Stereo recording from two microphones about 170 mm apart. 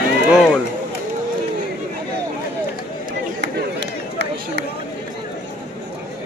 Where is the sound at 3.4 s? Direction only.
90° right.